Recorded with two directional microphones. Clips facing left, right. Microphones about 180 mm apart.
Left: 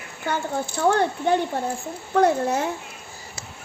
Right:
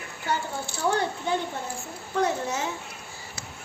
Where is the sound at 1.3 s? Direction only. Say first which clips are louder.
Left 7 dB; 60° left (ahead or behind).